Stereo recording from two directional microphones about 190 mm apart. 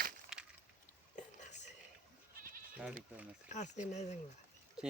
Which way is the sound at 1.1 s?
40° left (ahead or behind).